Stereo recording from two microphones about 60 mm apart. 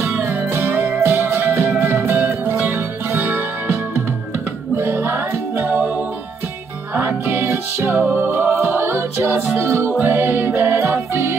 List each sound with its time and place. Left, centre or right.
0.6 s music: right
3.2 s music: right
7.0 s music: right